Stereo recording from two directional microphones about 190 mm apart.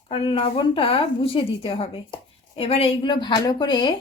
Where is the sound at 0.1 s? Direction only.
25° left (ahead or behind).